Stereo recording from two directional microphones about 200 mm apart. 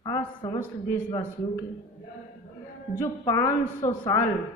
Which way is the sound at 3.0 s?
20° left (ahead or behind).